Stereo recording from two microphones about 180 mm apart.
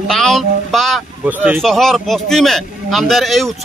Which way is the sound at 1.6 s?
Centre (ahead or behind).